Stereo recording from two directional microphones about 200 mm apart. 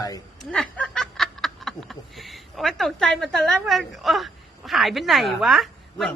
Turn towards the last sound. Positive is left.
turn(degrees=0)  # may be behind; listen again after turning